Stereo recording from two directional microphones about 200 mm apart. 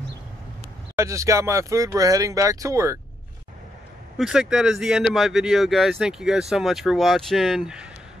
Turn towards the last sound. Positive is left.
turn(degrees=-5)  # may be behind; listen again after turning